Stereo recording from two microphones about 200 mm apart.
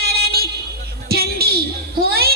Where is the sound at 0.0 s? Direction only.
50° right (ahead or behind).